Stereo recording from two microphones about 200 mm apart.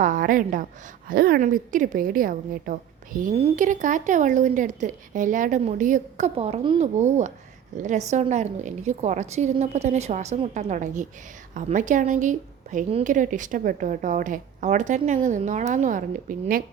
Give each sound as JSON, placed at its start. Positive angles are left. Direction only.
{"t": 0.0, "sound": "a woman's voice", "side_deg": -40}